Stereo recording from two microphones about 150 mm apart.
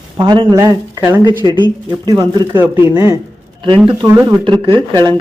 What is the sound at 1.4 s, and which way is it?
Speech, 30° right (ahead or behind).